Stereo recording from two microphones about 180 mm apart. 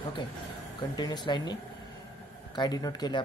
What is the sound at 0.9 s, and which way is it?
Speech, 25° left (ahead or behind).